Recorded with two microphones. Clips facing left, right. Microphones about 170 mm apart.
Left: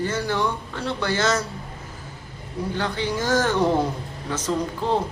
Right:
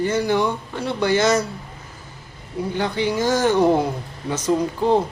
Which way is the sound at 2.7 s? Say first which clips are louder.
Right 5 dB; 15° right (ahead or behind).